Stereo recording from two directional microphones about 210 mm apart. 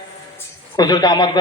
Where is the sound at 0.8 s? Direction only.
20° left (ahead or behind).